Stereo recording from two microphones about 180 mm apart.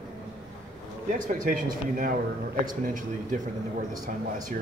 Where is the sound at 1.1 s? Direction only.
50° right (ahead or behind).